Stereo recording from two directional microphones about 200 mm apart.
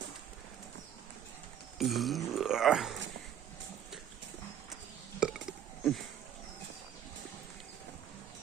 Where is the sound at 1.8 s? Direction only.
Centre (ahead or behind).